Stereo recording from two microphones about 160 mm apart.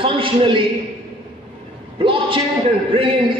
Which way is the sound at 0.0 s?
35° right (ahead or behind).